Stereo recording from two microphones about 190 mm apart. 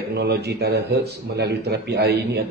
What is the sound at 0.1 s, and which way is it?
Speech, 60° right (ahead or behind).